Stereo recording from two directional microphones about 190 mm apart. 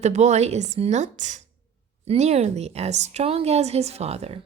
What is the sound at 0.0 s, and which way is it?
A woman's voice, 35° right (ahead or behind).